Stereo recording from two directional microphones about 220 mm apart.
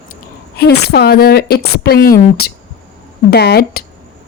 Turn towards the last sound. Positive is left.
turn(degrees=45)  # may be behind; listen again after turning